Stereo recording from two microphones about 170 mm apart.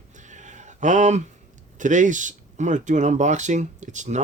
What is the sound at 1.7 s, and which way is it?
Speech, 45° right (ahead or behind).